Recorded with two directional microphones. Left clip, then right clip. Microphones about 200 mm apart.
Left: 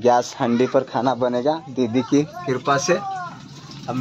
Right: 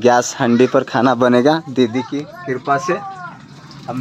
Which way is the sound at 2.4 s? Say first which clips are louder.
Right 5 dB; 5° left (ahead or behind).